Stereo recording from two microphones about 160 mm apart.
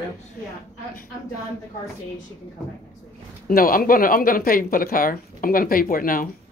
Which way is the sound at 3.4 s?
65° left (ahead or behind).